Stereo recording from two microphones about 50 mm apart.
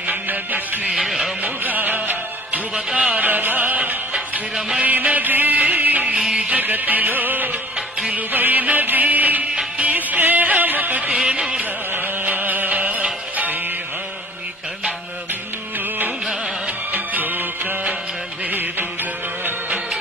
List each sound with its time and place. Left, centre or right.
0.0 s music: right
1.0 s a sound: centre
1.4 s music: right
2.7 s music: centre
3.2 s music: right
4.6 s music: centre
4.8 s music: right
11.1 s music: right
11.9 s music: right
16.9 s music: right